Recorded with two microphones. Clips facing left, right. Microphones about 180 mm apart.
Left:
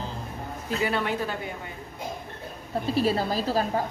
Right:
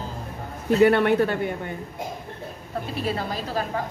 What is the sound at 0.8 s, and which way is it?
Speech, 60° right (ahead or behind).